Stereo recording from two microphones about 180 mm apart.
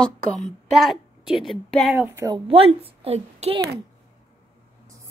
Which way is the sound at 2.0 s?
15° right (ahead or behind).